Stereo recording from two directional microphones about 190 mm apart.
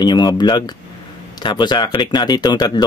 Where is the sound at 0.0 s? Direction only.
20° left (ahead or behind).